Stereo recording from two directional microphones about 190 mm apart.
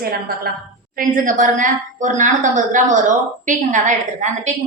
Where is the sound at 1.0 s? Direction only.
45° right (ahead or behind).